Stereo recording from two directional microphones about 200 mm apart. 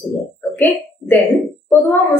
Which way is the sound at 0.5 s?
10° left (ahead or behind).